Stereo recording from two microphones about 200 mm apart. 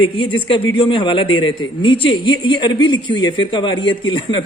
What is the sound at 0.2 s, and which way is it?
A man's voice, 25° left (ahead or behind).